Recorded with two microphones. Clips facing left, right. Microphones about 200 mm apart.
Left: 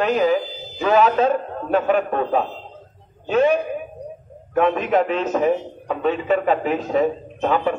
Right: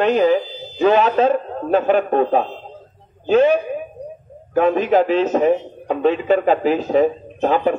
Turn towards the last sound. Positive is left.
turn(degrees=-30)  # may be behind; listen again after turning